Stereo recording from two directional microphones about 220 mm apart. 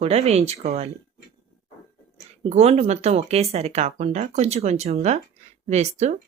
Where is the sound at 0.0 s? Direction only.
30° right (ahead or behind).